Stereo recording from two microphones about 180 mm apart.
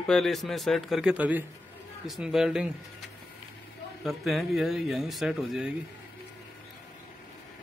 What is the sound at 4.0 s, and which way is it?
Speech, centre (ahead or behind).